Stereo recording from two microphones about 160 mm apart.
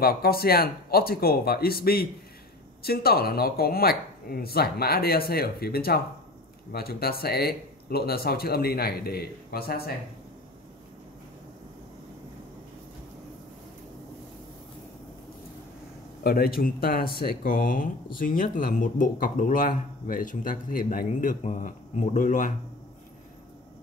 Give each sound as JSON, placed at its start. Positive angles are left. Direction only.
{"t": 0.0, "sound": "speech", "side_deg": 70}
{"t": 16.3, "sound": "speech", "side_deg": 70}